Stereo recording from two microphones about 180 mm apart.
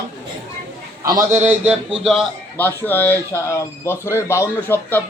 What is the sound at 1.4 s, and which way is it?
Speech, 10° right (ahead or behind).